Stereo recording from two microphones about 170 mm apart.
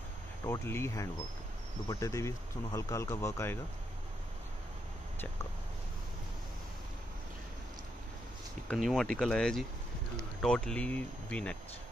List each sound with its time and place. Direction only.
0.5 s speech: 15° left (ahead or behind)
8.6 s speech: centre (ahead or behind)